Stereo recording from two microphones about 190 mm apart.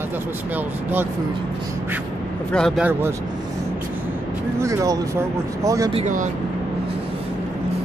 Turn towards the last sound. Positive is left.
turn(degrees=-40)  # may be behind; listen again after turning